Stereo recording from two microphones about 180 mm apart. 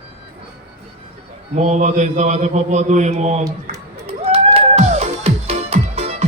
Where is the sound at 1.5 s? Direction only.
40° right (ahead or behind).